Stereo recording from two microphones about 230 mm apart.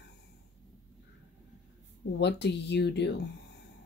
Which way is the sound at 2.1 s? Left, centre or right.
Left.